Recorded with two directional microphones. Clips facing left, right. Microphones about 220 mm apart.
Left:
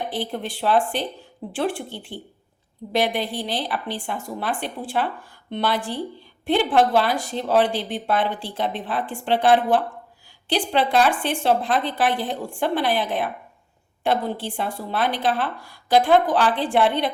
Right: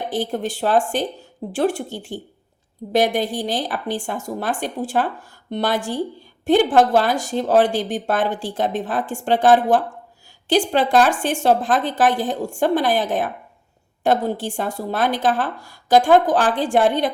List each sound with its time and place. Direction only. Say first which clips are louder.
0.1 s speech: right 5 dB; 45° right (ahead or behind)